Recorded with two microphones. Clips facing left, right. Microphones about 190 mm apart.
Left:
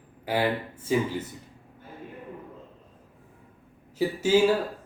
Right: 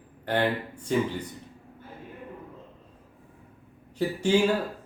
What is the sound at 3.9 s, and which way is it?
Speech, 5° left (ahead or behind).